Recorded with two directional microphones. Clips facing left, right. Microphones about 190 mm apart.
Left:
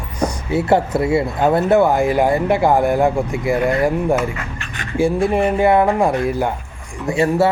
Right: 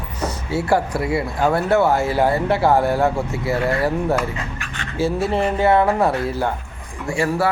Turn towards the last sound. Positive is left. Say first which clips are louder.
# left 4 dB
turn(degrees=25)  # may be behind; listen again after turning